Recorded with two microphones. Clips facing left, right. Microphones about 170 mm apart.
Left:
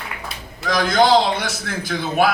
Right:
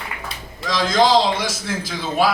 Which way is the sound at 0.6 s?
60° left (ahead or behind).